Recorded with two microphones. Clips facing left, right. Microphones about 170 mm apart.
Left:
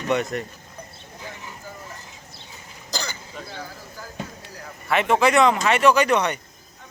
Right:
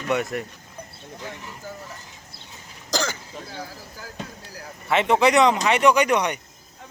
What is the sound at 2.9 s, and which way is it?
Throat clearing, 90° right.